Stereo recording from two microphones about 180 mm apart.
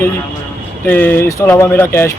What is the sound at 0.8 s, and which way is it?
Speech, 10° left (ahead or behind).